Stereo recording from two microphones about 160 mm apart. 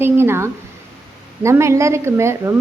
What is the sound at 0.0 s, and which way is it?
A woman's voice, 15° right (ahead or behind).